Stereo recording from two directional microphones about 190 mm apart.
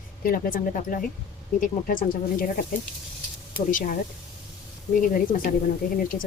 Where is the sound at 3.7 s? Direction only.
45° left (ahead or behind).